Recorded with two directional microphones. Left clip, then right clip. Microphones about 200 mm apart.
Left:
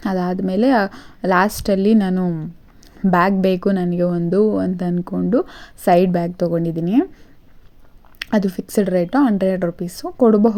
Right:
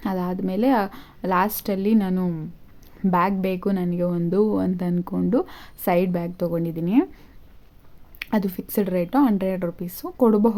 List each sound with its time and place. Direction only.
0.0 s a woman's voice: 15° left (ahead or behind)
8.2 s a woman's voice: 15° left (ahead or behind)